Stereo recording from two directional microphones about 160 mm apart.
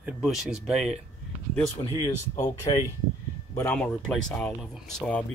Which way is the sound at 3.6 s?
10° left (ahead or behind).